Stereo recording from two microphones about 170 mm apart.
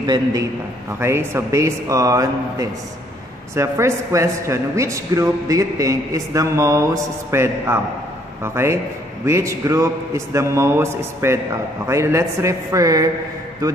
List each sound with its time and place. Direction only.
0.0 s a man's voice: 25° right (ahead or behind)
9.2 s a man's voice: 15° right (ahead or behind)